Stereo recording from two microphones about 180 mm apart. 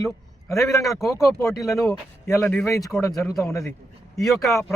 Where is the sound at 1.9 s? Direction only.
15° left (ahead or behind).